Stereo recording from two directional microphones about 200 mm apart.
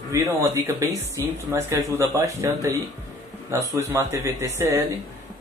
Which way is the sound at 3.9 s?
15° right (ahead or behind).